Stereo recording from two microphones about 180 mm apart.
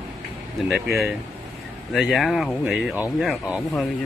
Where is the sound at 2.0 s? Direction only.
Centre (ahead or behind).